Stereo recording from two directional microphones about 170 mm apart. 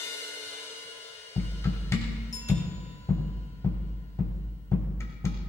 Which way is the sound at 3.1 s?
15° left (ahead or behind).